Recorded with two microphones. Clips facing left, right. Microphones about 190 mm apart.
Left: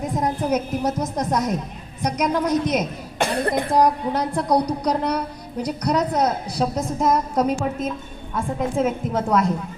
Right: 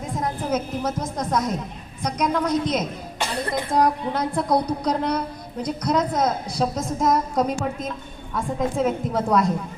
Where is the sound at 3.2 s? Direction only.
55° left (ahead or behind).